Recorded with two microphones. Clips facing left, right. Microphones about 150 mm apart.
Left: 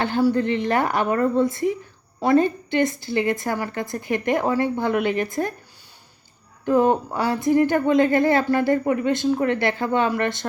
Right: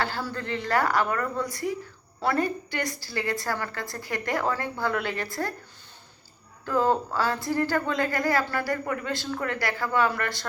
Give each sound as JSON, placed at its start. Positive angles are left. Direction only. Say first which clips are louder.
{"t": 0.0, "sound": "a woman's voice", "louder": "left 11 dB", "side_deg": 15}
{"t": 6.7, "sound": "a woman's voice", "louder": "left 6 dB", "side_deg": 20}